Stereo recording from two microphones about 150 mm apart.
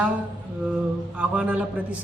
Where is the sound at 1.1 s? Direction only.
10° right (ahead or behind).